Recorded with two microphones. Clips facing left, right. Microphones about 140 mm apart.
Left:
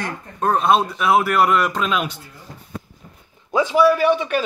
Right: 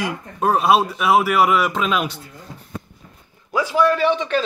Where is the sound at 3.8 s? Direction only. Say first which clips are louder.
Left 1 dB; 10° left (ahead or behind).